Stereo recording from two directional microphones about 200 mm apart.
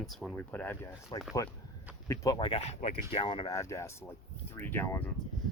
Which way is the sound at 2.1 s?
20° left (ahead or behind).